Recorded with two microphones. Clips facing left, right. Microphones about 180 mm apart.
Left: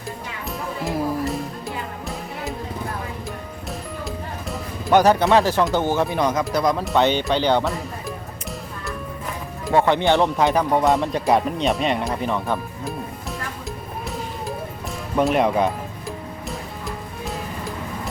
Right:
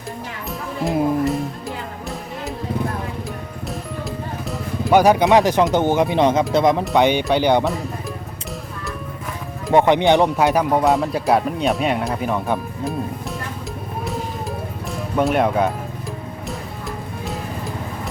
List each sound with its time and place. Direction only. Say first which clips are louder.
1.2 s music: right 4 dB; centre (ahead or behind)
4.5 s speech: right 2 dB; 10° right (ahead or behind)
6.9 s speech: right 3 dB; 15° right (ahead or behind)
9.7 s speech: right 3 dB; 20° right (ahead or behind)
15.1 s speech: right 1 dB; centre (ahead or behind)